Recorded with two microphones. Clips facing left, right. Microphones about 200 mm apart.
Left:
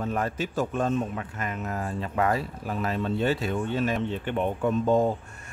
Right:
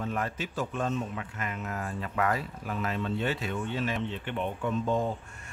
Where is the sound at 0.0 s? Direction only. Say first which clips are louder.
Left 4 dB; 40° left (ahead or behind).